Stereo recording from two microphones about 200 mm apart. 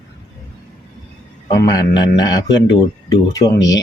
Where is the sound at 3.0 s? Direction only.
20° left (ahead or behind).